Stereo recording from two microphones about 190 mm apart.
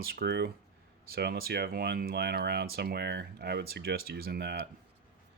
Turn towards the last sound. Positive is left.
turn(degrees=-60)  # may be behind; listen again after turning